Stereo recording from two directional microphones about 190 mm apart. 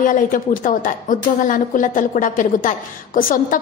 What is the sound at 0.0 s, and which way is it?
A woman's voice, 45° left (ahead or behind).